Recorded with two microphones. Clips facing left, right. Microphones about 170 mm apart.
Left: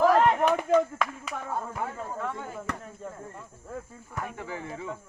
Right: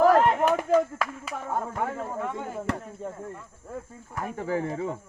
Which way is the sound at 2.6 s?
30° right (ahead or behind).